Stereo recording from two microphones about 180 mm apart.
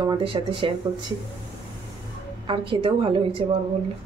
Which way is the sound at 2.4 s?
30° right (ahead or behind).